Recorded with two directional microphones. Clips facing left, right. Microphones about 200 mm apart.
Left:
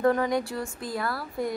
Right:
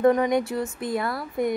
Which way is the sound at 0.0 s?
20° right (ahead or behind).